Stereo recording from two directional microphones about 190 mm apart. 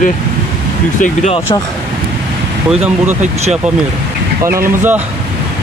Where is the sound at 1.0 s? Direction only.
40° left (ahead or behind).